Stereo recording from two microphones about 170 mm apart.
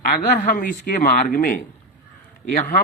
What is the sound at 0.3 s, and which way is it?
Speech, 55° left (ahead or behind).